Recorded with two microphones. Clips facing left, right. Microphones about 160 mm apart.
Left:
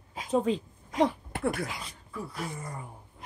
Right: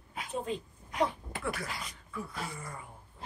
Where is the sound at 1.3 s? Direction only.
55° left (ahead or behind).